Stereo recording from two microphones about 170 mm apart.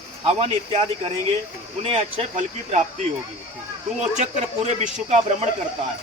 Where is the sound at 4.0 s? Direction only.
40° right (ahead or behind).